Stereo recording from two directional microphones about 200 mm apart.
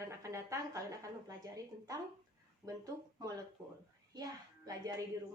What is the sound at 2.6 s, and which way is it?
A child's voice, 15° right (ahead or behind).